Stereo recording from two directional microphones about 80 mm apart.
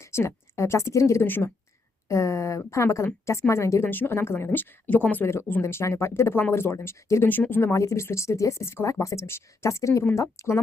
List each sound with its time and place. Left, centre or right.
0.0 s a woman's voice: left
1.3 s speech: left
2.0 s speech: left
3.8 s speech: left